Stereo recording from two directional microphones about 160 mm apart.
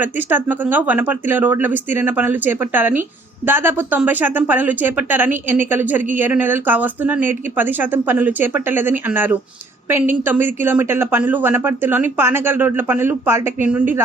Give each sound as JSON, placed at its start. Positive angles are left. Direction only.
{"t": 0.0, "sound": "speech", "side_deg": -10}